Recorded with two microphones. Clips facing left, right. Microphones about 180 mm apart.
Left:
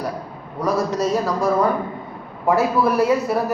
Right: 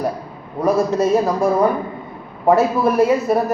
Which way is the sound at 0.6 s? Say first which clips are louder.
Right 4 dB; 55° right (ahead or behind).